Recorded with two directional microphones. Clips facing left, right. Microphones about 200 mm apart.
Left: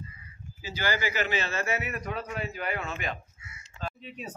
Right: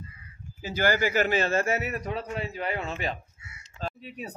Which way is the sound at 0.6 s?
50° right (ahead or behind).